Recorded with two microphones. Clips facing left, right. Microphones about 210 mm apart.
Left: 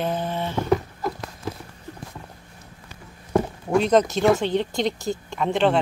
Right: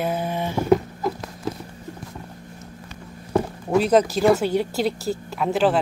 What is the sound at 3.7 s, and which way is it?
Speech, 5° right (ahead or behind).